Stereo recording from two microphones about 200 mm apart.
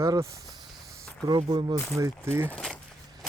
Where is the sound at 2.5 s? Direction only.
5° left (ahead or behind).